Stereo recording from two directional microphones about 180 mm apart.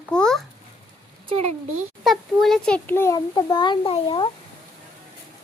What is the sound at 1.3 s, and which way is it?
Speech, 35° right (ahead or behind).